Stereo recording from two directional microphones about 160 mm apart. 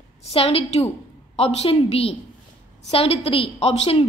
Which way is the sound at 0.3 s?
40° left (ahead or behind).